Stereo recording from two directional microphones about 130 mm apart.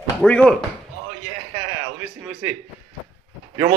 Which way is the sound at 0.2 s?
10° left (ahead or behind).